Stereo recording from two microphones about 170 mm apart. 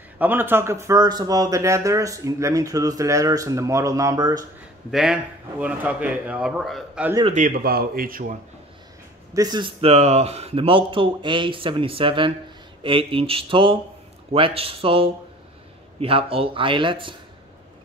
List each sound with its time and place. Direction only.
0.2 s speech: 10° right (ahead or behind)
4.9 s speech: 5° right (ahead or behind)
7.3 s speech: 55° right (ahead or behind)
9.3 s speech: 25° right (ahead or behind)